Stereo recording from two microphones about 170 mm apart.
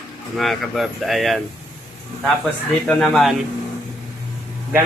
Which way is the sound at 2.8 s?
5° left (ahead or behind).